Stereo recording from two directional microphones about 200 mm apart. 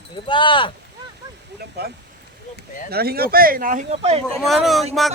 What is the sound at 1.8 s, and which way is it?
Speech, 55° right (ahead or behind).